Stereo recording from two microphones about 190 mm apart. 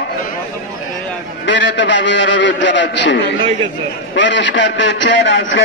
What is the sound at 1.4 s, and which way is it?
A man's voice, 75° left (ahead or behind).